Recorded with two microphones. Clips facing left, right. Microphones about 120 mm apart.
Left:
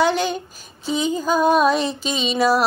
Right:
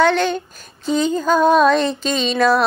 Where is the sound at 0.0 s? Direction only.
10° left (ahead or behind).